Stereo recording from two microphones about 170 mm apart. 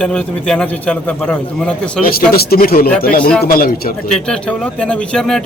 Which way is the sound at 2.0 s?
60° left (ahead or behind).